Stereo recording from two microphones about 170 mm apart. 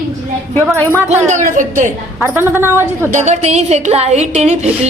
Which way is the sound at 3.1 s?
45° right (ahead or behind).